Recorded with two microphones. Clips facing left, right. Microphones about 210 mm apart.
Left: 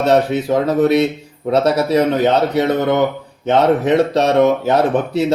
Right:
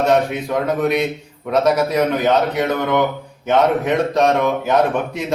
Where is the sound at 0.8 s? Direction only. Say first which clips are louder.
Left 5 dB; 30° left (ahead or behind).